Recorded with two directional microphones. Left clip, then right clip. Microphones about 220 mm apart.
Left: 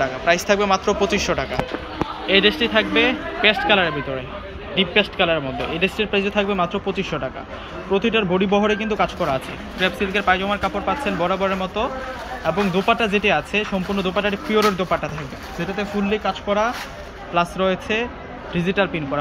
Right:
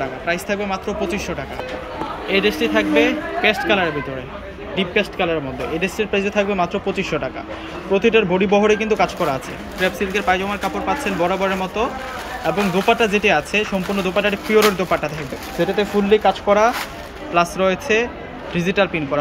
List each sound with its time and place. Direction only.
0.0 s a man's voice: 5° right (ahead or behind)
15.6 s speech: 25° right (ahead or behind)